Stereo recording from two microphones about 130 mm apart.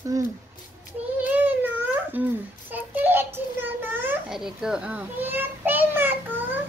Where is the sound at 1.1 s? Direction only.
10° right (ahead or behind).